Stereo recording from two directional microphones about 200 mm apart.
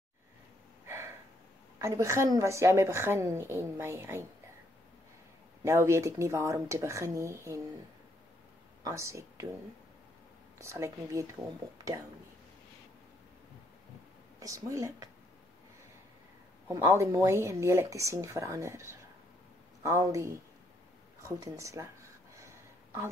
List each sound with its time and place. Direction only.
0.8 s gasp: 15° right (ahead or behind)
1.8 s a woman's voice: 15° right (ahead or behind)
5.6 s a woman's voice: 15° right (ahead or behind)
8.8 s speech: 15° right (ahead or behind)
10.6 s a woman's voice: 15° right (ahead or behind)
14.4 s a woman's voice: 15° right (ahead or behind)
16.6 s a woman's voice: 15° right (ahead or behind)
21.2 s a sound: 15° right (ahead or behind)